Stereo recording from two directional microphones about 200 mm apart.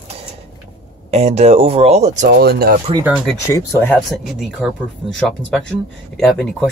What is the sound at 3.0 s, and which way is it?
Speech, 5° right (ahead or behind).